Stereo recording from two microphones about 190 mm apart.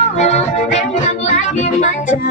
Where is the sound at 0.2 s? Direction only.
35° left (ahead or behind).